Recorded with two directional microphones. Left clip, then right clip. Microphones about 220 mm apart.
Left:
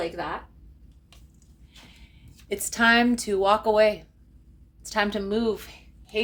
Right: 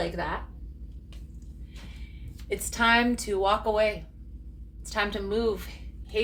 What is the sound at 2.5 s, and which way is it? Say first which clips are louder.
Speech: left 3 dB; 45° left (ahead or behind).